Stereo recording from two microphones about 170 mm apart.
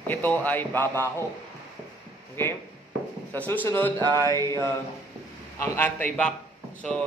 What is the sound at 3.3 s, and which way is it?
Speech, 10° left (ahead or behind).